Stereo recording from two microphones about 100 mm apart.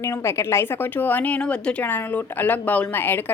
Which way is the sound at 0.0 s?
30° left (ahead or behind).